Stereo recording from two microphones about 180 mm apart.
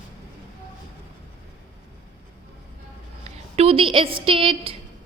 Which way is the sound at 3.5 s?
35° right (ahead or behind).